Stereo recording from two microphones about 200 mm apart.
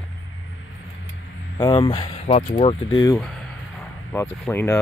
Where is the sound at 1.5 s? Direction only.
25° left (ahead or behind).